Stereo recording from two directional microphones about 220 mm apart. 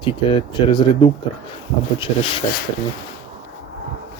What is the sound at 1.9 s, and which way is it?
Speech, 25° left (ahead or behind).